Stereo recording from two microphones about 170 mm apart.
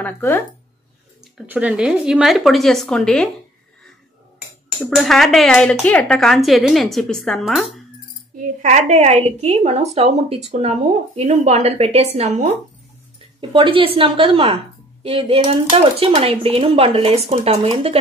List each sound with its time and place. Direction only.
0.0 s speech: 10° left (ahead or behind)
1.4 s speech: 10° right (ahead or behind)
4.8 s speech: centre (ahead or behind)
8.4 s a woman's voice: 45° right (ahead or behind)
13.4 s a woman's voice: 30° right (ahead or behind)